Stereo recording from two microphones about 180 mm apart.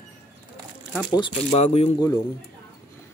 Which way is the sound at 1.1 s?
30° left (ahead or behind).